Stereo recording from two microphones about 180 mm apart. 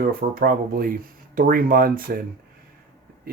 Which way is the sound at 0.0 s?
55° right (ahead or behind).